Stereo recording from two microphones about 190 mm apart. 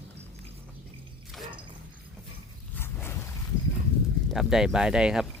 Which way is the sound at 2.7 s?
10° left (ahead or behind).